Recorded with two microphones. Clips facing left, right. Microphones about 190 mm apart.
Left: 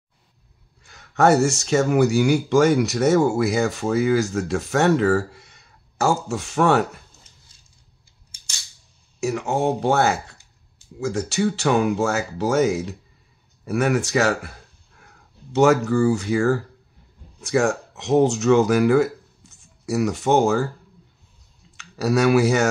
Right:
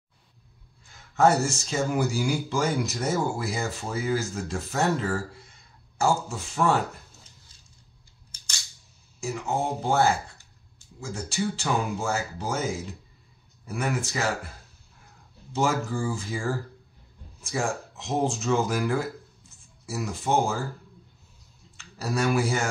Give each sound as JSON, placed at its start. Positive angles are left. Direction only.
{"t": 0.8, "sound": "speech", "side_deg": 75}
{"t": 9.2, "sound": "speech", "side_deg": 70}
{"t": 21.7, "sound": "speech", "side_deg": 75}